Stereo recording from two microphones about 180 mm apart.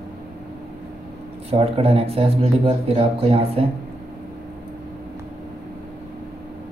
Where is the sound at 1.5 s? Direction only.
35° right (ahead or behind).